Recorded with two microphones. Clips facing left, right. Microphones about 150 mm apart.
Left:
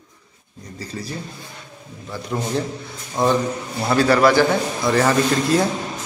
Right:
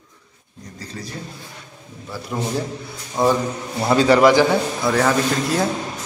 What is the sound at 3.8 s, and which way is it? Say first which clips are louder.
Speech: right 2 dB; 20° right (ahead or behind).